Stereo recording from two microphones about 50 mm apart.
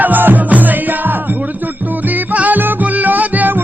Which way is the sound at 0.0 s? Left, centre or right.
Right.